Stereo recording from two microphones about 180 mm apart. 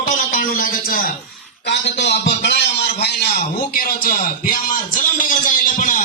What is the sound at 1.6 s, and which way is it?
A man's voice, 75° left (ahead or behind).